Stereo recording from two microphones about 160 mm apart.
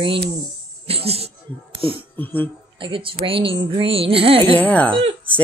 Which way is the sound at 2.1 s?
10° left (ahead or behind).